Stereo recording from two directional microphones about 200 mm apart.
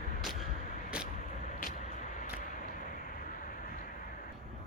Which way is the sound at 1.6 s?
40° left (ahead or behind).